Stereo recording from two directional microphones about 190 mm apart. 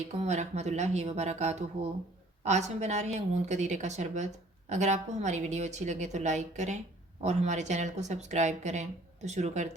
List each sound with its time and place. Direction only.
0.2 s speech: 35° right (ahead or behind)